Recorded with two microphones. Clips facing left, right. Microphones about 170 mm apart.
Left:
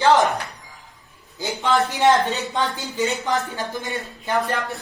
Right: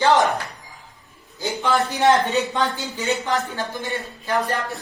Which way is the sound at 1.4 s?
20° left (ahead or behind).